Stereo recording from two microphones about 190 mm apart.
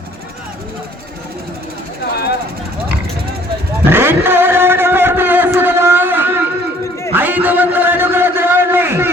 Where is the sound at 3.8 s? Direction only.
10° right (ahead or behind).